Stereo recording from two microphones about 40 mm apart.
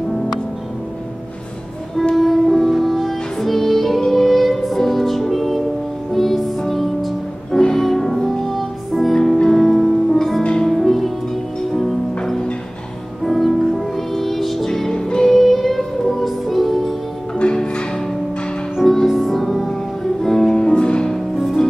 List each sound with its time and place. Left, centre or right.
2.1 s music: centre
13.2 s music: centre
15.2 s music: centre
17.4 s music: left
18.9 s music: centre
20.5 s music: centre